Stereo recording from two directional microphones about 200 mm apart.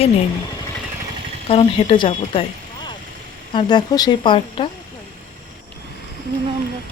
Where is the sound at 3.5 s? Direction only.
20° left (ahead or behind).